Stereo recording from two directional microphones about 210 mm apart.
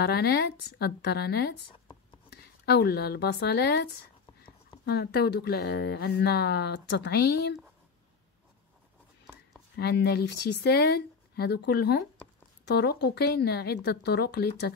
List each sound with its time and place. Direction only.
0.0 s a woman's voice: 50° left (ahead or behind)
9.8 s speech: 50° left (ahead or behind)